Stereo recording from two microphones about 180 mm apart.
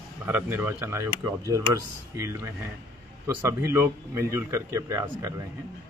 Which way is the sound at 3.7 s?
15° right (ahead or behind).